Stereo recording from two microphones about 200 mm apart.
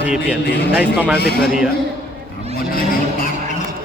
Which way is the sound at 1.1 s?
55° left (ahead or behind).